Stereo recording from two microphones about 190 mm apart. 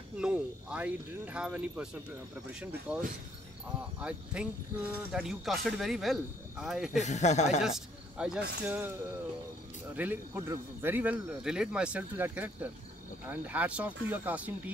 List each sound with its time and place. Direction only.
0.2 s speech: 5° right (ahead or behind)
2.9 s speech: 5° right (ahead or behind)
7.0 s speech: 35° left (ahead or behind)
7.6 s speech: centre (ahead or behind)
9.9 s speech: 10° right (ahead or behind)